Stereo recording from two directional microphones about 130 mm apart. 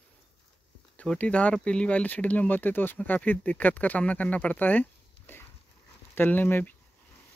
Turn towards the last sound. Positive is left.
turn(degrees=15)  # may be behind; listen again after turning